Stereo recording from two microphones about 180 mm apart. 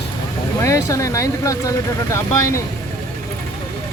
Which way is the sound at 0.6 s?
15° left (ahead or behind).